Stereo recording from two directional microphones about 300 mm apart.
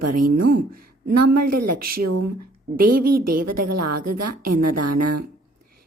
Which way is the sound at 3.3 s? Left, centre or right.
Right.